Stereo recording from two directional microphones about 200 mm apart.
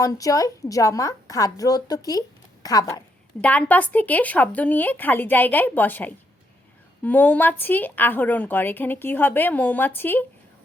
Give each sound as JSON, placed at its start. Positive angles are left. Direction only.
{"t": 0.0, "sound": "a woman's voice", "side_deg": 15}